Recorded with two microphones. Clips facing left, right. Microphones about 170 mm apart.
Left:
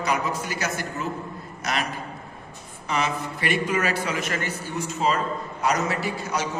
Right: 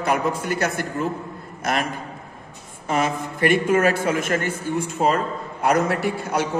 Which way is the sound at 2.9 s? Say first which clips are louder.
Right 4 dB; 50° right (ahead or behind).